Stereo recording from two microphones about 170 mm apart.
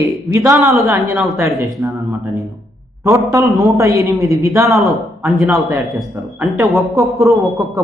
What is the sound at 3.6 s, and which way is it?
A man's voice, 20° right (ahead or behind).